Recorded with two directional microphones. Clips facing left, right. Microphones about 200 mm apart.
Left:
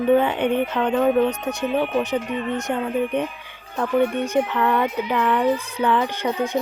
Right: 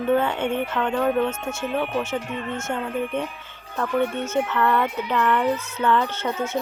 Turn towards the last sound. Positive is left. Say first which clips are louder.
# left 3 dB
turn(degrees=15)  # may be behind; listen again after turning